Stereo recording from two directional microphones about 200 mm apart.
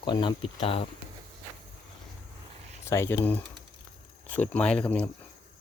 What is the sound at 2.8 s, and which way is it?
Speech, 15° left (ahead or behind).